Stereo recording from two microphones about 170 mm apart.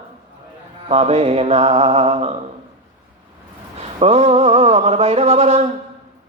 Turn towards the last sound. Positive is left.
turn(degrees=-40)  # may be behind; listen again after turning